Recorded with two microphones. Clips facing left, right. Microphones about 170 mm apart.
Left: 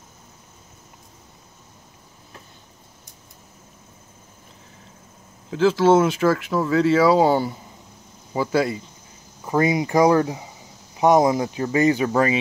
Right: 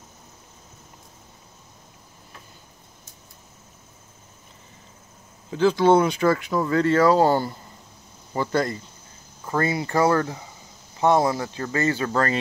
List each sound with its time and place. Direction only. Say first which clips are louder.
5.5 s speech: left 1 dB; centre (ahead or behind)